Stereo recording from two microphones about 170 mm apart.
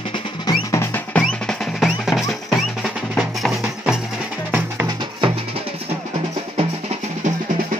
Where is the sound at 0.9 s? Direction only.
5° left (ahead or behind).